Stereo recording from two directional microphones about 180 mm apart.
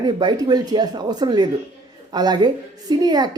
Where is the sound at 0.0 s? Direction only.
25° right (ahead or behind).